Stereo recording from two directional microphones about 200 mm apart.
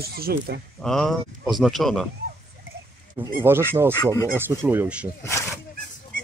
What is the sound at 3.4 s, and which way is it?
Speech, 10° right (ahead or behind).